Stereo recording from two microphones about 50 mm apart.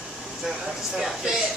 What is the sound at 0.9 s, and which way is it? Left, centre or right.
Speech, centre.